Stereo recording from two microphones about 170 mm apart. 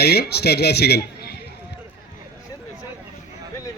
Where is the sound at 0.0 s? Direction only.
70° left (ahead or behind).